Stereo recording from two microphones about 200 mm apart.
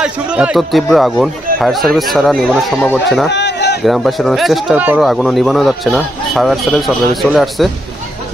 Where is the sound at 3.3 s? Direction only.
60° left (ahead or behind).